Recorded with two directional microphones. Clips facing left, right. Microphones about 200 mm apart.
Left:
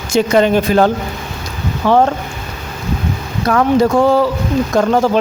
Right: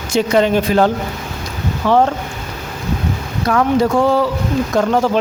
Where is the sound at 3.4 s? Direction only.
45° left (ahead or behind).